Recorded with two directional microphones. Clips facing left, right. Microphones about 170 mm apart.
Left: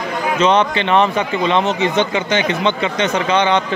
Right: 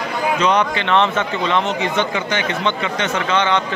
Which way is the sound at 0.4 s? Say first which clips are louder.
Left 5 dB; 25° left (ahead or behind).